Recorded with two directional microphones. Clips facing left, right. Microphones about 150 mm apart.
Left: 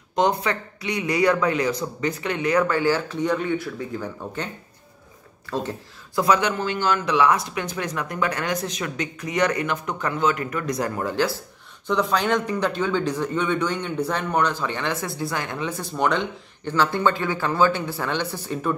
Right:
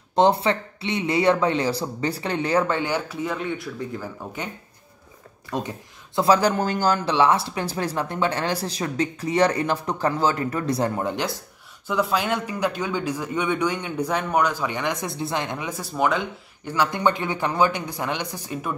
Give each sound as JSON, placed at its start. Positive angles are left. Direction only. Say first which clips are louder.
{"t": 0.1, "sound": "speech", "louder": "right 3 dB", "side_deg": -30}
{"t": 6.1, "sound": "speech", "louder": "right 2 dB", "side_deg": -30}
{"t": 11.9, "sound": "speech", "louder": "left 2 dB", "side_deg": -5}